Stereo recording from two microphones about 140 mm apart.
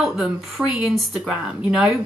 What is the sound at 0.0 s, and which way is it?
A woman's voice, centre (ahead or behind).